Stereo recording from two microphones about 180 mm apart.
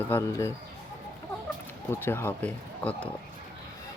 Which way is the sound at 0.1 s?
15° left (ahead or behind).